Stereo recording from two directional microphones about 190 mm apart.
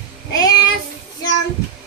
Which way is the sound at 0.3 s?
20° left (ahead or behind).